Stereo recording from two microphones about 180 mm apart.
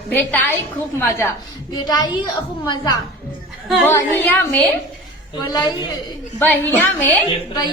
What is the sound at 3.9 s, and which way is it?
Speech, 10° left (ahead or behind).